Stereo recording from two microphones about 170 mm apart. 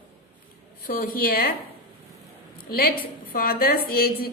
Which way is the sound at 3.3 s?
60° left (ahead or behind).